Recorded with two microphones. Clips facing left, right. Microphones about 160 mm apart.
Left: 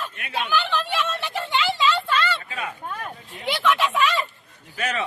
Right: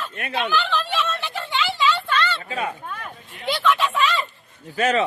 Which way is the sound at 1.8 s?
Centre (ahead or behind).